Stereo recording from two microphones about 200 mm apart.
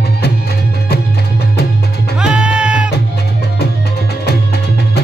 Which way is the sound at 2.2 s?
5° right (ahead or behind).